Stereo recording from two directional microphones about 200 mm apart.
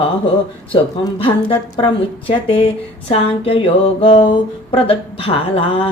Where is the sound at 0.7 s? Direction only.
25° left (ahead or behind).